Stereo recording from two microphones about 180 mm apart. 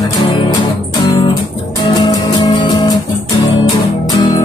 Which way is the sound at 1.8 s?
25° left (ahead or behind).